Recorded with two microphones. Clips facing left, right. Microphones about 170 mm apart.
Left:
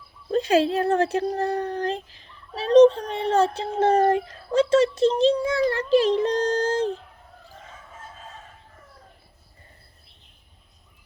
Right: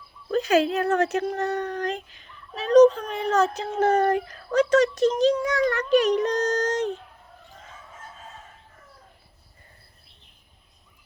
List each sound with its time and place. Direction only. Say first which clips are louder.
0.3 s speech: left 1 dB; 30° left (ahead or behind)